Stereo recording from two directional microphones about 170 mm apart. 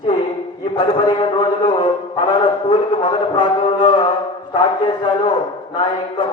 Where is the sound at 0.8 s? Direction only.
25° left (ahead or behind).